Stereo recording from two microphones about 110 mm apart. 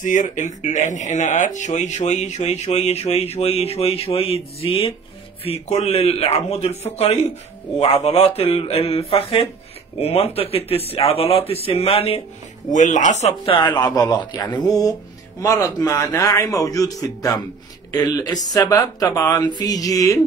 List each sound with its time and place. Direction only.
0.3 s a man's voice: 90° left; by 7.2 s 75° left (ahead or behind)
7.8 s speech: 65° left (ahead or behind)
12.7 s speech: 90° left
13.7 s speech: 35° left (ahead or behind)